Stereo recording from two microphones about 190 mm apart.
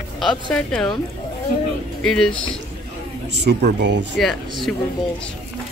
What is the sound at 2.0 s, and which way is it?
Speech, 5° left (ahead or behind).